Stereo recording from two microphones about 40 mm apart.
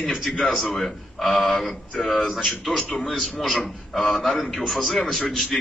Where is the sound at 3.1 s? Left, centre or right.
Centre.